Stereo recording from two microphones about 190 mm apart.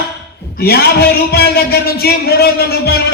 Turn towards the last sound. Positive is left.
turn(degrees=55)  # may be behind; listen again after turning